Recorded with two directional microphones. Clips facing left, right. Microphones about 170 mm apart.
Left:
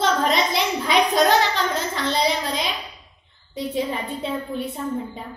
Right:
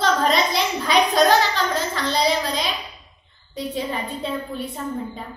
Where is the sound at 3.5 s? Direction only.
25° left (ahead or behind).